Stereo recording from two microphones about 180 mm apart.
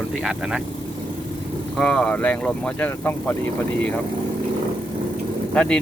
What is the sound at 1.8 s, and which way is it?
Speech, 5° left (ahead or behind).